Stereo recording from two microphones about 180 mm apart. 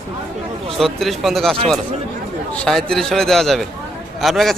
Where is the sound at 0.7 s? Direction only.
Centre (ahead or behind).